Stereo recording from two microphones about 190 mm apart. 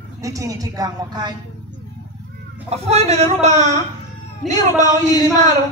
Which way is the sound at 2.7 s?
35° right (ahead or behind).